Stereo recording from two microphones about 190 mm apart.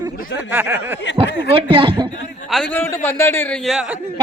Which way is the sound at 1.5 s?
25° right (ahead or behind).